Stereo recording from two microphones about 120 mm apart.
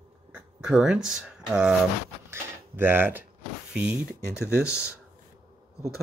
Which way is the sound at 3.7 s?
15° right (ahead or behind).